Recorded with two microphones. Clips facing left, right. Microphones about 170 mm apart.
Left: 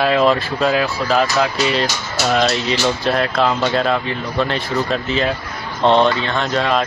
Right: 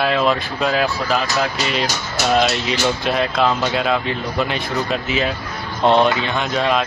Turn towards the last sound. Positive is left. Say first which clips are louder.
# left 1 dB
turn(degrees=-5)  # may be behind; listen again after turning